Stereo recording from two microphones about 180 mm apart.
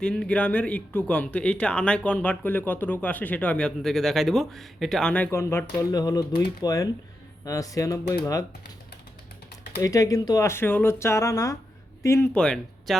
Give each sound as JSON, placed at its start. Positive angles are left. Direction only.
{"t": 0.0, "sound": "a man's voice", "side_deg": 5}
{"t": 9.8, "sound": "a man's voice", "side_deg": 20}